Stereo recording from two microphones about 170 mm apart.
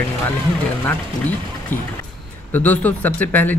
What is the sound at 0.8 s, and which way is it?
Speech, 10° left (ahead or behind).